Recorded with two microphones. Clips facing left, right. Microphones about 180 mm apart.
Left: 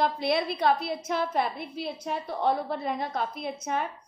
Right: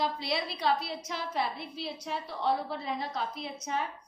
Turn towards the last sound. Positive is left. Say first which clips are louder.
# left 4 dB
turn(degrees=55)  # may be behind; listen again after turning